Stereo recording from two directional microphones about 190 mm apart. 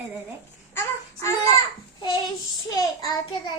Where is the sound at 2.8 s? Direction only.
20° left (ahead or behind).